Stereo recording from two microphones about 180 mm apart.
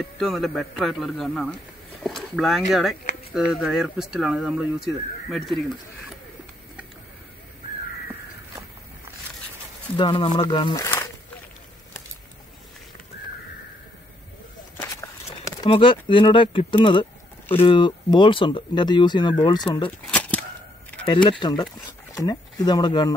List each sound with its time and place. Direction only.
0.2 s speech: centre (ahead or behind)
9.9 s speech: 25° left (ahead or behind)
14.8 s a sound: 15° left (ahead or behind)
15.6 s speech: 30° left (ahead or behind)
20.1 s a sound: 10° left (ahead or behind)
21.1 s speech: 25° left (ahead or behind)